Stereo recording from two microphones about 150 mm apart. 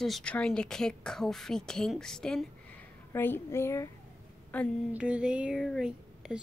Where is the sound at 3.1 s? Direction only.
15° left (ahead or behind).